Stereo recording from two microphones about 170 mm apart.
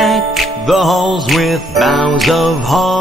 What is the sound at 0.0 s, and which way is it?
Music, centre (ahead or behind).